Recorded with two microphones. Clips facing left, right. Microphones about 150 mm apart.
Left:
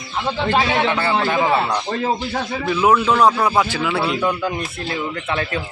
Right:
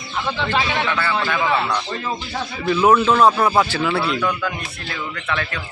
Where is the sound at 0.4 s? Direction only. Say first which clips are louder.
Left 5 dB; 45° left (ahead or behind).